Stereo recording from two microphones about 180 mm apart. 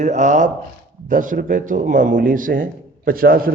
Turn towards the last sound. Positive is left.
turn(degrees=-55)  # may be behind; listen again after turning